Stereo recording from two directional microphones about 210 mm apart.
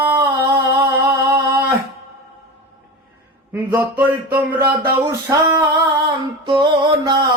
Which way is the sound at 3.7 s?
10° right (ahead or behind).